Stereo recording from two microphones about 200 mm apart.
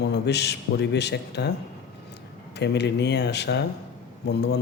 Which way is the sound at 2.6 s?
60° left (ahead or behind).